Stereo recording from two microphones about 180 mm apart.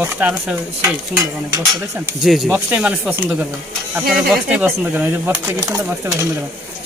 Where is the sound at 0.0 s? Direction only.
10° right (ahead or behind).